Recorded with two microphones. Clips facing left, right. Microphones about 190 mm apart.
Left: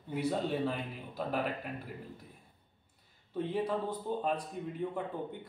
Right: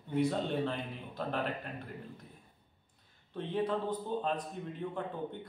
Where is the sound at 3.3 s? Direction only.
10° left (ahead or behind).